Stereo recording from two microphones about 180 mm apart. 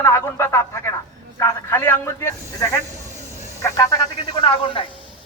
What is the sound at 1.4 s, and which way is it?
A man's voice, 15° left (ahead or behind).